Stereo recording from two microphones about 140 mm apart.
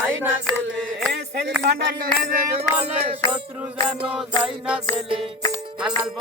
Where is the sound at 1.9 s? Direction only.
90° right.